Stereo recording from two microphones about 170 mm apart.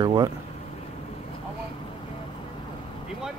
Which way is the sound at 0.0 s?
25° right (ahead or behind).